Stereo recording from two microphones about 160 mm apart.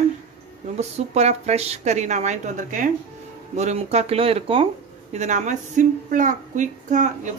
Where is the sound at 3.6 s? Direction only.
45° right (ahead or behind).